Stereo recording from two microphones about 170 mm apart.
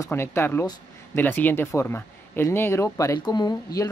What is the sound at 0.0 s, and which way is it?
Speech, 15° left (ahead or behind).